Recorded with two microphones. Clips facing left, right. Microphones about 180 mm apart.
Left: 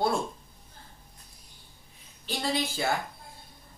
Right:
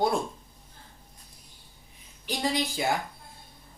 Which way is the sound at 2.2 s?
15° right (ahead or behind).